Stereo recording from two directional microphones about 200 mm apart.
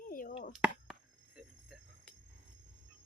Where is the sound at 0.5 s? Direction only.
5° right (ahead or behind).